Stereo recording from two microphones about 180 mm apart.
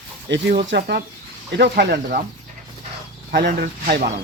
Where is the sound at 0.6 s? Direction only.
65° right (ahead or behind).